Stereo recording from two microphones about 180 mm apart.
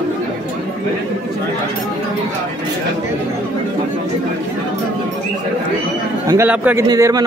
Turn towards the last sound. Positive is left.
turn(degrees=-20)  # may be behind; listen again after turning